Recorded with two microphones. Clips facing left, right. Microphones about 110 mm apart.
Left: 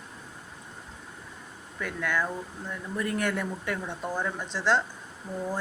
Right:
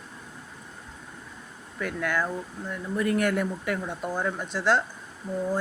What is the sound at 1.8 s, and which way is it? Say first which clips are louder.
A woman's voice: right 2 dB; 10° right (ahead or behind).